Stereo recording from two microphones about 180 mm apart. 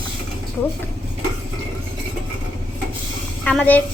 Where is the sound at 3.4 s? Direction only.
5° left (ahead or behind).